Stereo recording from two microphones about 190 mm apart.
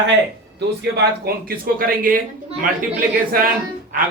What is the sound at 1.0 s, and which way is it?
Speech, 50° right (ahead or behind).